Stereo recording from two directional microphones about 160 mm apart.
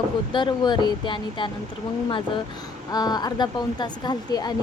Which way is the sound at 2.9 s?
25° left (ahead or behind).